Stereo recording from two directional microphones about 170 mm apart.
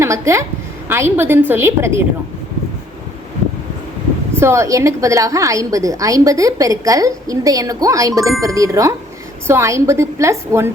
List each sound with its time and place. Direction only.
0.0 s a woman's voice: 15° right (ahead or behind)
4.4 s a woman's voice: 15° right (ahead or behind)